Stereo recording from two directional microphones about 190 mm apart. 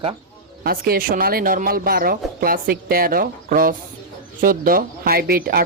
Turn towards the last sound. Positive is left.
turn(degrees=-50)  # may be behind; listen again after turning